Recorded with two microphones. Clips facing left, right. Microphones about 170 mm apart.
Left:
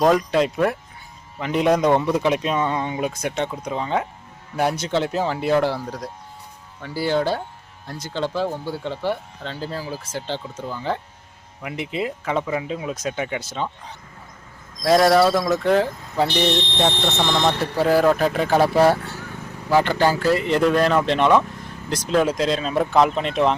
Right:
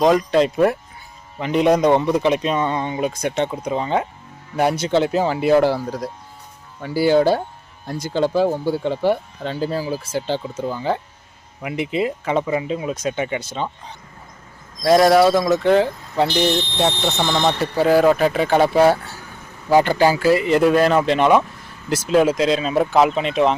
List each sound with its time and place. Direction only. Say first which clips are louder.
0.0 s speech: right 2 dB; centre (ahead or behind)
2.0 s speech: right 2 dB; 15° right (ahead or behind)
2.3 s speech: right 2 dB; 5° left (ahead or behind)
14.8 s speech: right 2 dB; centre (ahead or behind)
19.7 s speech: right 3 dB; 10° right (ahead or behind)